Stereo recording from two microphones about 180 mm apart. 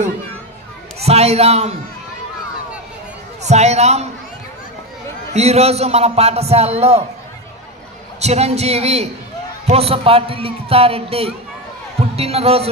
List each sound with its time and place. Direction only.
0.9 s a man's voice: 35° right (ahead or behind)
3.4 s a man's voice: 40° right (ahead or behind)
5.3 s a man's voice: 35° right (ahead or behind)
8.2 s a man's voice: 35° right (ahead or behind)